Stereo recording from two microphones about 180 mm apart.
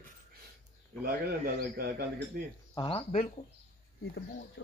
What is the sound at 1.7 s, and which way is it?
Speech, 60° right (ahead or behind).